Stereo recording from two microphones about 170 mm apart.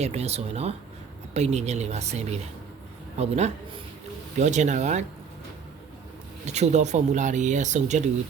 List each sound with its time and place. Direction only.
0.0 s speech: 40° right (ahead or behind)
6.4 s speech: 40° right (ahead or behind)